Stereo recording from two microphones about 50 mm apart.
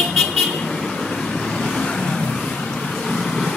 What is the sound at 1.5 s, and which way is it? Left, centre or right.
Vehicle, centre.